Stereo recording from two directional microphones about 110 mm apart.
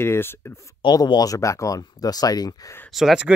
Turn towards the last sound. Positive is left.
turn(degrees=-5)  # may be behind; listen again after turning